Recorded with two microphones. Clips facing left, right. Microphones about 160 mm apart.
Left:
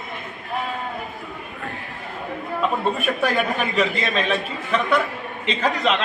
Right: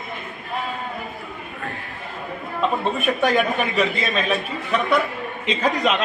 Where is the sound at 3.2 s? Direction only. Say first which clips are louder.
Right 4 dB; centre (ahead or behind).